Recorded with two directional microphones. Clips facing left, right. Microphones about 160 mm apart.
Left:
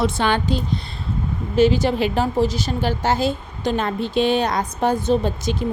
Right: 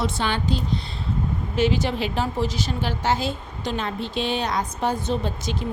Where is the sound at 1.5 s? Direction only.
35° left (ahead or behind).